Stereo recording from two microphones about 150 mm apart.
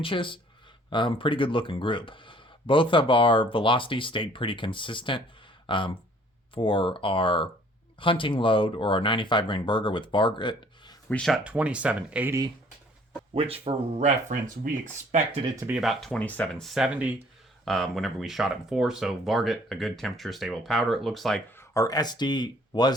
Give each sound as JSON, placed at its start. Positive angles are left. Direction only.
{"t": 0.0, "sound": "speech", "side_deg": 35}
{"t": 11.1, "sound": "speech", "side_deg": 5}
{"t": 11.4, "sound": "speech", "side_deg": -10}
{"t": 13.3, "sound": "speech", "side_deg": -40}
{"t": 15.3, "sound": "speech", "side_deg": -15}
{"t": 15.8, "sound": "speech", "side_deg": 0}
{"t": 21.6, "sound": "speech", "side_deg": 20}